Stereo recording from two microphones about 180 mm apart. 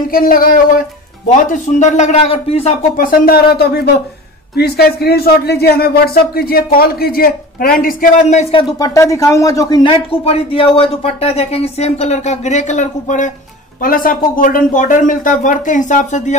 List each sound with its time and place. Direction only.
0.1 s speech: 55° left (ahead or behind)
1.5 s speech: 40° left (ahead or behind)
3.0 s speech: 50° left (ahead or behind)
7.8 s speech: 45° left (ahead or behind)
8.7 s speech: 20° left (ahead or behind)
10.2 s speech: 30° left (ahead or behind)